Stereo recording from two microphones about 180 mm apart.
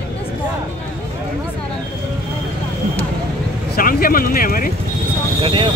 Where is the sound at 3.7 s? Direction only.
55° left (ahead or behind).